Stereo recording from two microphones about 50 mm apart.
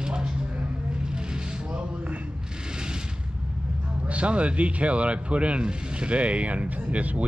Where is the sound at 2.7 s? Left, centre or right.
Centre.